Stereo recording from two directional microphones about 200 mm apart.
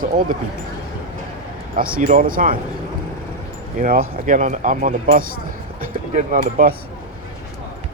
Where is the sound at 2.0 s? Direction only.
45° right (ahead or behind).